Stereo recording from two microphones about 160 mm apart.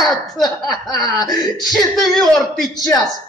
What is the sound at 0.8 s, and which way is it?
Speech, 25° left (ahead or behind).